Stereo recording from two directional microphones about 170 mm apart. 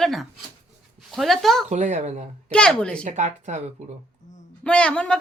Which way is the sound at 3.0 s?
45° right (ahead or behind).